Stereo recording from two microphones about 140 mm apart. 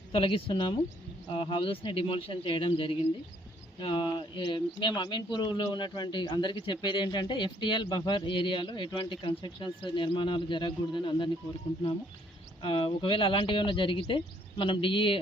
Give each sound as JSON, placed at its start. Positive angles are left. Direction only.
{"t": 0.1, "sound": "speech", "side_deg": 40}
{"t": 12.6, "sound": "speech", "side_deg": 40}